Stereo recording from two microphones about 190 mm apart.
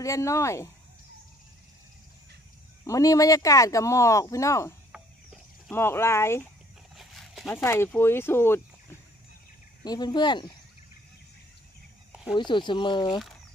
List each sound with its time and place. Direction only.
0.0 s speech: 15° left (ahead or behind)
2.8 s speech: 15° left (ahead or behind)
7.0 s a sound: centre (ahead or behind)
7.4 s speech: 15° left (ahead or behind)
9.8 s speech: 20° left (ahead or behind)
12.4 s speech: 25° left (ahead or behind)